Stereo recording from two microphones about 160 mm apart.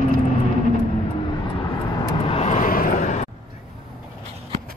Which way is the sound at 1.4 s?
25° left (ahead or behind).